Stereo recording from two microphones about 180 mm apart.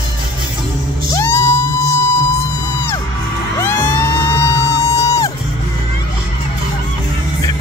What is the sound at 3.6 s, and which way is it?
Music, 15° left (ahead or behind).